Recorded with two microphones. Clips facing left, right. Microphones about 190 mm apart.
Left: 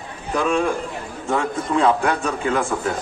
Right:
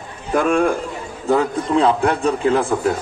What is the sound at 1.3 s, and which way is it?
A man's voice, 35° right (ahead or behind).